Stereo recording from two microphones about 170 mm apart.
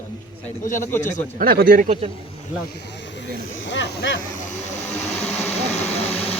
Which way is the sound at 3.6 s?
85° left.